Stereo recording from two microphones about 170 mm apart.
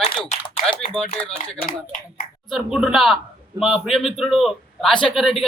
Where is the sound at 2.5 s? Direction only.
5° right (ahead or behind).